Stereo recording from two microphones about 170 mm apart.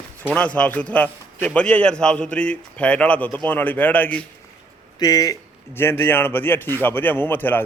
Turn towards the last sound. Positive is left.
turn(degrees=10)  # may be behind; listen again after turning